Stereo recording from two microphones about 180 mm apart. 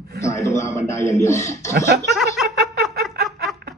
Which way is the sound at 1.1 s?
15° left (ahead or behind).